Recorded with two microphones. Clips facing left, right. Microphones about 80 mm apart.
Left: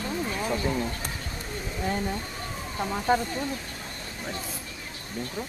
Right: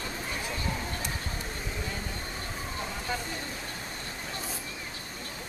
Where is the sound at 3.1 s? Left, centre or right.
Left.